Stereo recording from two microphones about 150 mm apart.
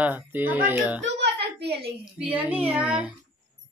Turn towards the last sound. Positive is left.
turn(degrees=-10)  # may be behind; listen again after turning